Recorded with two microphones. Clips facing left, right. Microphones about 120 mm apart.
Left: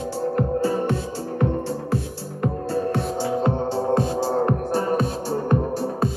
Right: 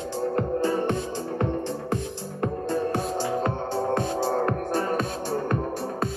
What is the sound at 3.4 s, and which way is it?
Music, 35° left (ahead or behind).